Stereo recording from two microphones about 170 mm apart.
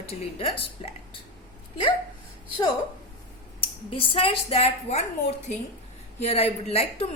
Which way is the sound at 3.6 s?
35° left (ahead or behind).